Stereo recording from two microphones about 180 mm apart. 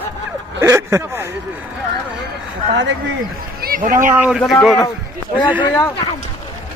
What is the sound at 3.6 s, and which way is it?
Speech, 50° right (ahead or behind).